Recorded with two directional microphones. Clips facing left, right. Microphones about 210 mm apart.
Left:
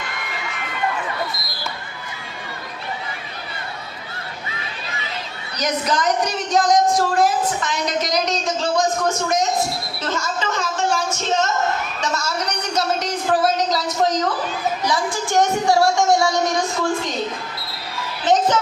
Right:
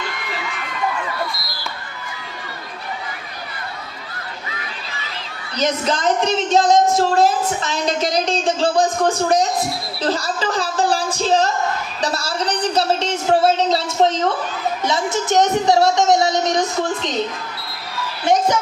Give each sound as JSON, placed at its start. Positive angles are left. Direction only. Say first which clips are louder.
{"t": 5.5, "sound": "a woman's voice", "louder": "right 2 dB", "side_deg": -25}
{"t": 11.9, "sound": "a sound", "louder": "right 2 dB", "side_deg": -35}
{"t": 14.8, "sound": "a woman's voice", "louder": "right 5 dB", "side_deg": -25}
{"t": 18.3, "sound": "a woman's voice", "louder": "even", "side_deg": -10}